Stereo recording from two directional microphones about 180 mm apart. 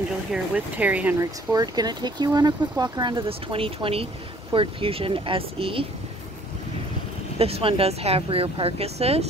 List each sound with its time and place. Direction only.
0.3 s speech: 10° right (ahead or behind); by 5.9 s 30° right (ahead or behind)
7.3 s speech: 35° right (ahead or behind)